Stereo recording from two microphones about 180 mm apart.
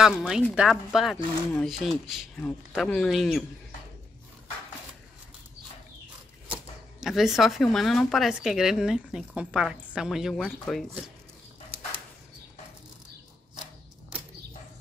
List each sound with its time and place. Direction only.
0.0 s speech: centre (ahead or behind)
6.4 s speech: 5° right (ahead or behind)